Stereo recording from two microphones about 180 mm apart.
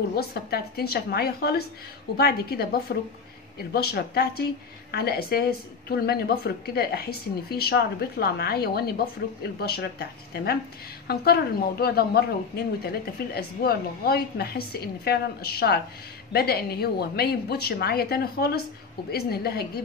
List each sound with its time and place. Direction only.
0.1 s speech: 60° left (ahead or behind)